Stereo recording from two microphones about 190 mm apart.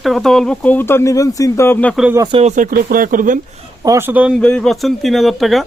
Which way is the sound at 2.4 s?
40° right (ahead or behind).